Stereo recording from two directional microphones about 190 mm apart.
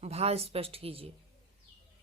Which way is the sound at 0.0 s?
35° right (ahead or behind).